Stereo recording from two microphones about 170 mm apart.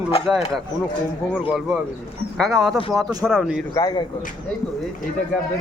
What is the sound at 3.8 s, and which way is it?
Speech, 25° left (ahead or behind).